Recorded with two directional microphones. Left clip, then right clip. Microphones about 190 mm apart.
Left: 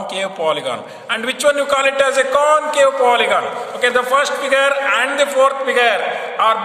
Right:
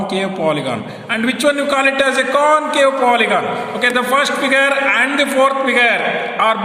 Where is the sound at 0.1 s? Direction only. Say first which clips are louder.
Even; 35° left (ahead or behind).